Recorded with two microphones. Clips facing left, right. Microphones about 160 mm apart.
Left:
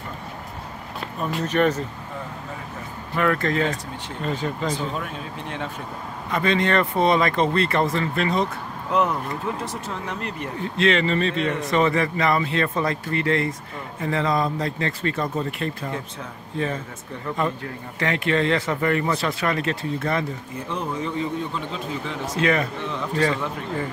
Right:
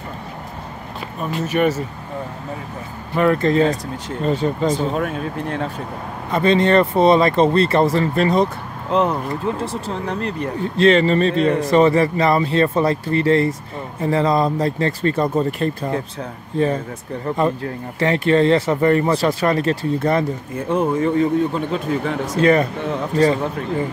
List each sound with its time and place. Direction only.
1.3 s speech: 5° right (ahead or behind)
3.2 s speech: 25° right (ahead or behind)
4.6 s speech: 50° right (ahead or behind)
6.3 s speech: 30° right (ahead or behind)